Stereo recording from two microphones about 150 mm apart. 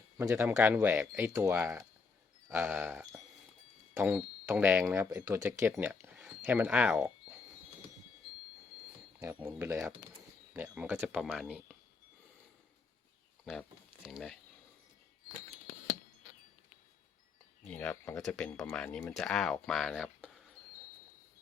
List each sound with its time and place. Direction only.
0.2 s speech: 15° right (ahead or behind)
5.0 s speech: 20° right (ahead or behind)
9.2 s speech: 15° right (ahead or behind)
13.4 s speech: centre (ahead or behind)
17.7 s speech: 10° left (ahead or behind)